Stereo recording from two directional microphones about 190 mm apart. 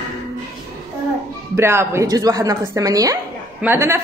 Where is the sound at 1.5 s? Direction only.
15° right (ahead or behind).